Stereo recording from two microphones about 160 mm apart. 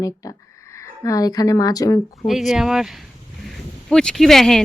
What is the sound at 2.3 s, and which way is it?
Speech, centre (ahead or behind).